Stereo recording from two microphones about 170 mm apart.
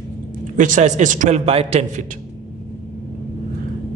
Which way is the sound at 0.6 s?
45° right (ahead or behind).